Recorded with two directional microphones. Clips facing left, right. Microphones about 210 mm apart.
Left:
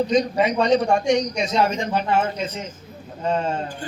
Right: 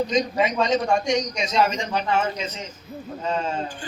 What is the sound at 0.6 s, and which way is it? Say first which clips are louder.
A man's voice: left 4 dB; 60° left (ahead or behind).